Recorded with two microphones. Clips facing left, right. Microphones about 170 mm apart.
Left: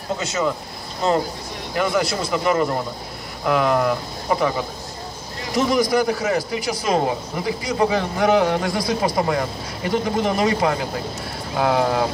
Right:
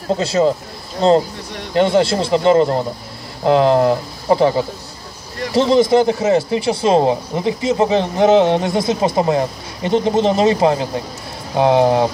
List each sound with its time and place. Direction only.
0.2 s a man's voice: 30° right (ahead or behind)